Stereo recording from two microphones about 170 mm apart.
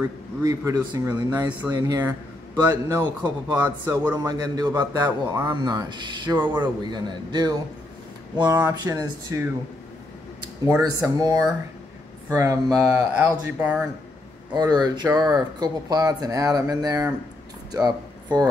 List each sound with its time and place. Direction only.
0.0 s speech: 20° right (ahead or behind)
10.8 s speech: 20° right (ahead or behind)
14.5 s speech: 25° right (ahead or behind)
17.6 s a sound: 25° right (ahead or behind)